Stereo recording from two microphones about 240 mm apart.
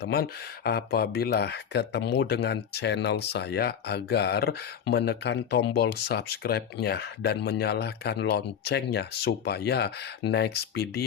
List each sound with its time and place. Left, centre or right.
0.0 s speech: left